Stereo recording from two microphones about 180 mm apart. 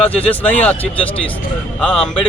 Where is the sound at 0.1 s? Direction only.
30° left (ahead or behind).